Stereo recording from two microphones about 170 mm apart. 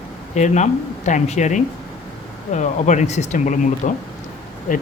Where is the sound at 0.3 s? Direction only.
45° left (ahead or behind).